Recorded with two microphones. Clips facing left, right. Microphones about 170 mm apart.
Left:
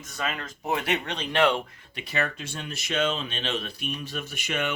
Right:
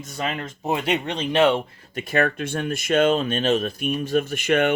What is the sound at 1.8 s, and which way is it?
Speech, 40° right (ahead or behind).